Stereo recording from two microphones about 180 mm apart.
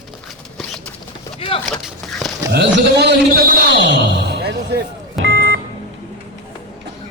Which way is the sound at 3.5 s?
65° right (ahead or behind).